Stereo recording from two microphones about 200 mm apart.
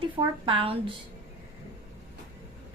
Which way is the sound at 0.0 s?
25° right (ahead or behind).